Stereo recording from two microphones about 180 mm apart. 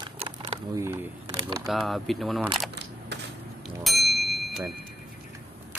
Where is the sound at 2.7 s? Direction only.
70° right (ahead or behind).